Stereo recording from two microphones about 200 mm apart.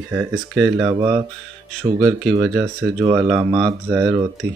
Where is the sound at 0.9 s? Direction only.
20° right (ahead or behind).